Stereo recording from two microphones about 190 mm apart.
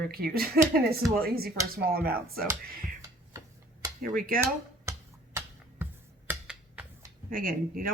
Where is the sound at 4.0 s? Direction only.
50° right (ahead or behind).